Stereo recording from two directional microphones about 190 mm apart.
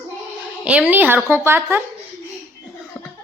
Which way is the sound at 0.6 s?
5° right (ahead or behind).